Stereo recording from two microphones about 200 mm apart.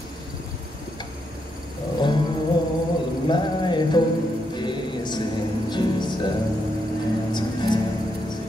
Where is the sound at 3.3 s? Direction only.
20° left (ahead or behind).